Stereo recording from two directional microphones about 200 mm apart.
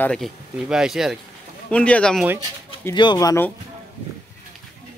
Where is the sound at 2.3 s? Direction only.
20° left (ahead or behind).